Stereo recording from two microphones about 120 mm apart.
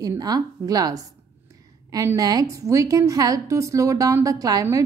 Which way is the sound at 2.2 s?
35° right (ahead or behind).